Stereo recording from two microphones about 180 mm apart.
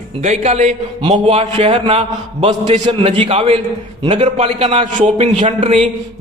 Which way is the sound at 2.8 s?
30° right (ahead or behind).